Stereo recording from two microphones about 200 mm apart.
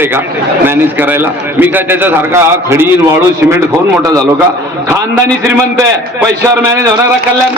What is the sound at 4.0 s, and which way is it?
Speech, 15° right (ahead or behind).